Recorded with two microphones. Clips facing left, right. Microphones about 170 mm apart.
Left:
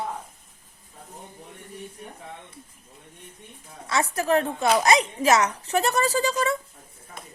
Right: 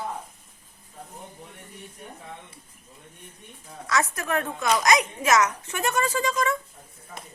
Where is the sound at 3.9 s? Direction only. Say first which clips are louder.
Left 3 dB; 30° left (ahead or behind).